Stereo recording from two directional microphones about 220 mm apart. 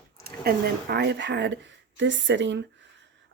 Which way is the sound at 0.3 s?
45° right (ahead or behind).